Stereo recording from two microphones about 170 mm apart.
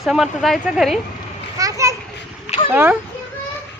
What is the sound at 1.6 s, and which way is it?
Children playing, 20° right (ahead or behind).